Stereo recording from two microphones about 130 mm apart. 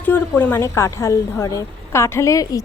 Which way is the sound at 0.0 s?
15° left (ahead or behind).